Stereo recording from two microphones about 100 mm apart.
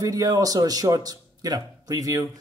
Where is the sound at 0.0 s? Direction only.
35° right (ahead or behind).